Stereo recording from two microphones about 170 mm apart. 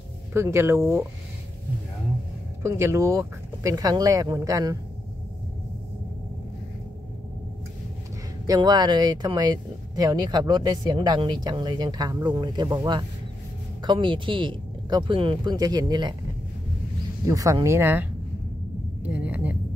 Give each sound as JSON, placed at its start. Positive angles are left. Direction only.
{"t": 0.3, "sound": "speech", "side_deg": -15}
{"t": 2.6, "sound": "speech", "side_deg": -15}
{"t": 8.5, "sound": "speech", "side_deg": -25}
{"t": 17.3, "sound": "speech", "side_deg": -20}
{"t": 19.0, "sound": "a sound", "side_deg": -10}